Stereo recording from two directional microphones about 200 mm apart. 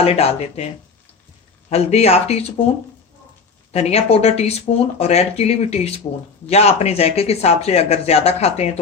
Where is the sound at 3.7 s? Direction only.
30° left (ahead or behind).